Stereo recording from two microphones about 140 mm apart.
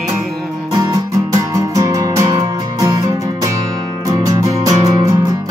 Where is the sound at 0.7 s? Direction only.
25° right (ahead or behind).